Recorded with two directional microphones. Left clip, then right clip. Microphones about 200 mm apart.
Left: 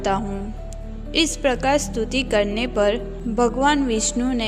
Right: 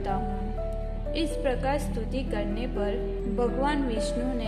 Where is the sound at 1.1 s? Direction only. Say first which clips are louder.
Left 9 dB; 50° left (ahead or behind).